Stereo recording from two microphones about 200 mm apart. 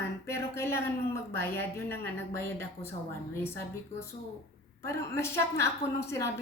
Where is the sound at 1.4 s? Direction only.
10° left (ahead or behind).